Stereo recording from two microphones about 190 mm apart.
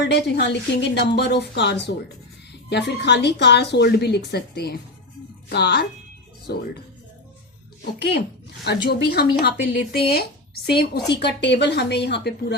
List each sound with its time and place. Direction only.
0.0 s a woman's voice: 65° left (ahead or behind)
7.9 s a woman's voice: 65° left (ahead or behind)